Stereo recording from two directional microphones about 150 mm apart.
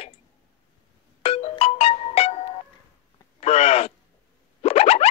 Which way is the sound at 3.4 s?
45° left (ahead or behind).